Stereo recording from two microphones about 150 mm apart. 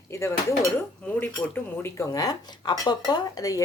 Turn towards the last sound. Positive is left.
turn(degrees=25)  # may be behind; listen again after turning